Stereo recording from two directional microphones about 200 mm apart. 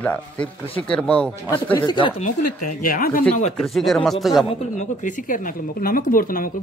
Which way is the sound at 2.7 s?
45° left (ahead or behind).